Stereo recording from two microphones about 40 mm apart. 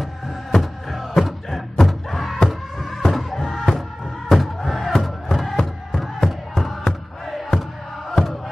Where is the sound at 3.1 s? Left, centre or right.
Centre.